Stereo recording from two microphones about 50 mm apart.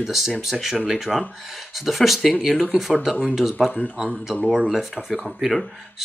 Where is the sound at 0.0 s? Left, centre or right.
Centre.